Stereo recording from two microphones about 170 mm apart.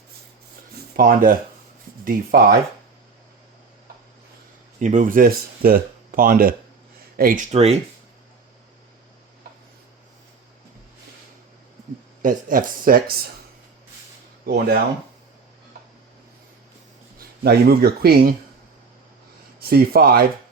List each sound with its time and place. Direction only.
0.9 s speech: 60° right (ahead or behind)
4.8 s speech: 45° right (ahead or behind)
7.5 s speech: 40° right (ahead or behind)
12.2 s speech: 55° right (ahead or behind)
14.4 s speech: 65° right (ahead or behind)
17.2 s speech: 65° right (ahead or behind)
19.5 s speech: 65° right (ahead or behind)